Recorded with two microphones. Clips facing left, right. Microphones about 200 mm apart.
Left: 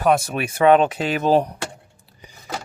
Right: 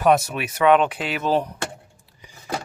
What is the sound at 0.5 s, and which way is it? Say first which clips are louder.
Speech: left 2 dB; 40° left (ahead or behind).